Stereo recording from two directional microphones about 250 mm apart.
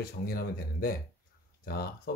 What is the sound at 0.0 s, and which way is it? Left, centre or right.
Speech, left.